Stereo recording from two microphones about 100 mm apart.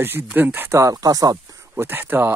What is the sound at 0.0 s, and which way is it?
Speech, 20° right (ahead or behind).